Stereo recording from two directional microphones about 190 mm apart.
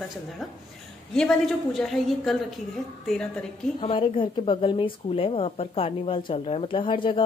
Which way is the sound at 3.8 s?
25° left (ahead or behind).